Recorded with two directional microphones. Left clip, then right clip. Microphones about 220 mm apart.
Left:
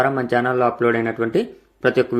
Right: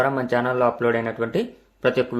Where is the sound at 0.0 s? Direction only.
10° left (ahead or behind).